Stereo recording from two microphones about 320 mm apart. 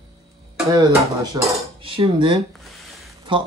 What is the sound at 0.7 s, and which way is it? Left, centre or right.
Speech, centre.